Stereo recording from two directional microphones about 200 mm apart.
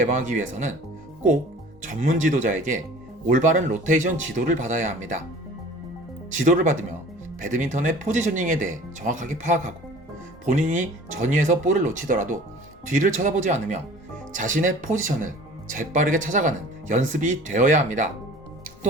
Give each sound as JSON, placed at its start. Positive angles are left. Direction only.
{"t": 0.0, "sound": "speech", "side_deg": -40}
{"t": 1.8, "sound": "speech", "side_deg": -40}
{"t": 6.3, "sound": "speech", "side_deg": -40}